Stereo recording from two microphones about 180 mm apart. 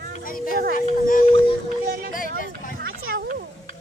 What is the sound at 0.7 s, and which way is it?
Speech, 50° left (ahead or behind).